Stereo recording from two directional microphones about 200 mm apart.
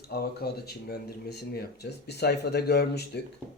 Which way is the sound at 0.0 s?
50° left (ahead or behind).